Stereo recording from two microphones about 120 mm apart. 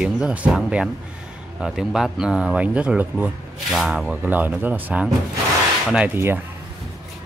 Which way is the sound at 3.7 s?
5° right (ahead or behind).